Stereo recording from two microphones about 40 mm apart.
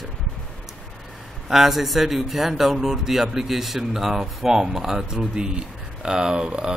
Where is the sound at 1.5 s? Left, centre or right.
Centre.